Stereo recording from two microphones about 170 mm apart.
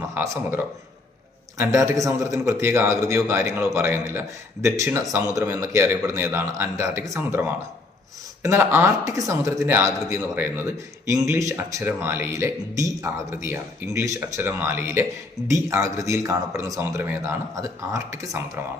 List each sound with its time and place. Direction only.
0.1 s speech: 15° right (ahead or behind)